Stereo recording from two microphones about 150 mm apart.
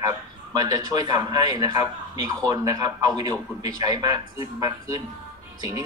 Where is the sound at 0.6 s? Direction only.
25° right (ahead or behind).